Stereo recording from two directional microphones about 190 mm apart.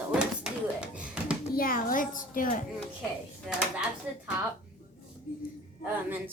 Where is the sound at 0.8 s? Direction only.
5° right (ahead or behind).